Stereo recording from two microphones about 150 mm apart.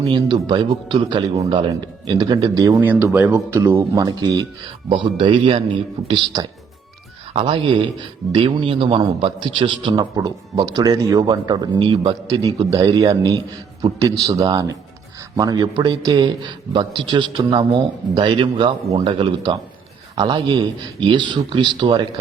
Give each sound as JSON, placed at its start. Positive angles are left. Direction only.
{"t": 0.2, "sound": "a man's voice", "side_deg": -30}